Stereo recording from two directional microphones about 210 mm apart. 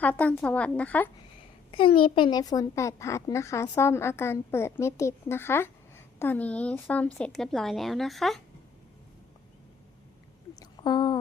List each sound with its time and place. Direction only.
0.0 s speech: 5° left (ahead or behind)
1.7 s speech: 25° left (ahead or behind); by 8.4 s centre (ahead or behind)
10.5 s a sound: 20° left (ahead or behind)